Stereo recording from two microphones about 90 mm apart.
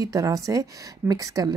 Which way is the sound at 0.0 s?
40° right (ahead or behind).